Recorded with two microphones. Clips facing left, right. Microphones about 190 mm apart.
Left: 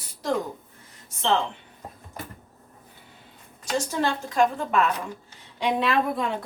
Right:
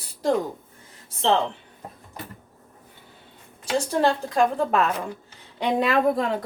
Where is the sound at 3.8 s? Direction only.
35° right (ahead or behind).